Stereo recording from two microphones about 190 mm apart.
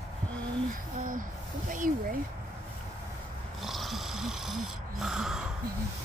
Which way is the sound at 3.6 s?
Centre (ahead or behind).